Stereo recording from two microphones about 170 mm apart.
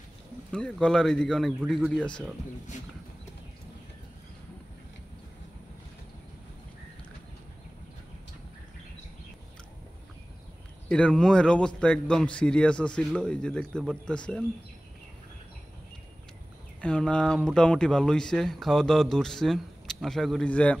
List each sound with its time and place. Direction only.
0.5 s speech: 5° left (ahead or behind)
10.9 s speech: 5° left (ahead or behind)
16.8 s speech: 5° left (ahead or behind)